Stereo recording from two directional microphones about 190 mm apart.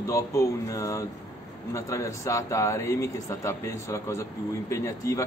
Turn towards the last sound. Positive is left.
turn(degrees=15)  # may be behind; listen again after turning